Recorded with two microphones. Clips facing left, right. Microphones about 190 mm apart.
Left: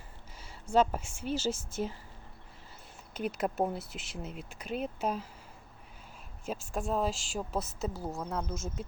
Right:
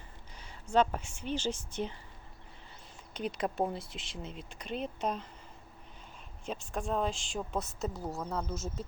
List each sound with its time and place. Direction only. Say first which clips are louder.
0.7 s a woman's voice: left 1 dB; 5° left (ahead or behind)
3.2 s speech: left 1 dB; 5° left (ahead or behind)
6.4 s speech: left 2 dB; 5° left (ahead or behind)